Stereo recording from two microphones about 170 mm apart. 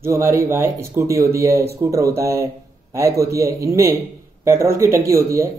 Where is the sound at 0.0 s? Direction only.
15° right (ahead or behind).